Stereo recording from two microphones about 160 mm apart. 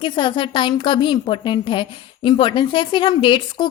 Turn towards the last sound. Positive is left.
turn(degrees=30)  # may be behind; listen again after turning